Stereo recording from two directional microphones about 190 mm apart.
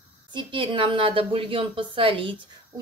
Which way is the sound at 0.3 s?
25° right (ahead or behind).